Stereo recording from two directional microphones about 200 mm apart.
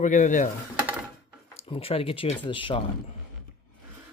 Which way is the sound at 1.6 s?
30° left (ahead or behind).